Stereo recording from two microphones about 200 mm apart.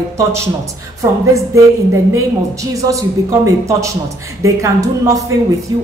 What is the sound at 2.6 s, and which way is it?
Speech, 15° right (ahead or behind).